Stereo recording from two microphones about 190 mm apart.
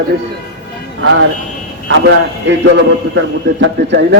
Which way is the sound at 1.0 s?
80° right.